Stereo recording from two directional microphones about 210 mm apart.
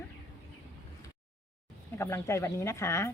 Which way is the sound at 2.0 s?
15° left (ahead or behind).